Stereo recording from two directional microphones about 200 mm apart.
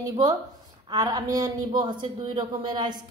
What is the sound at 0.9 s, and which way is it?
A woman's voice, 20° right (ahead or behind).